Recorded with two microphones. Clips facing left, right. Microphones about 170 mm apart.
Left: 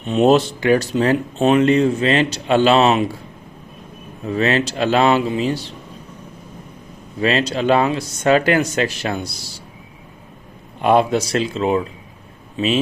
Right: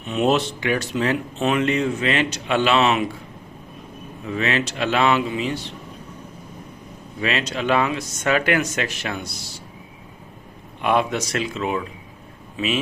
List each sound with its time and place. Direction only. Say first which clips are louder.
0.1 s speech: left 6 dB; 35° left (ahead or behind)
4.3 s speech: left 5 dB; 35° left (ahead or behind)
7.2 s speech: left 6 dB; 35° left (ahead or behind)
10.8 s a man's voice: left 6 dB; 35° left (ahead or behind)